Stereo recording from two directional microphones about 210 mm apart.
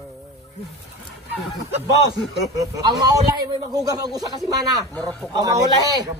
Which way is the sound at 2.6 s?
15° right (ahead or behind).